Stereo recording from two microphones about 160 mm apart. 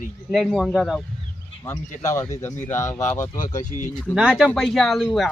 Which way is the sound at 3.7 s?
50° left (ahead or behind).